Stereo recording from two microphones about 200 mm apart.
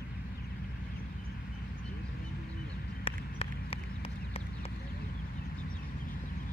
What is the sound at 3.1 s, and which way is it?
Run, 30° left (ahead or behind).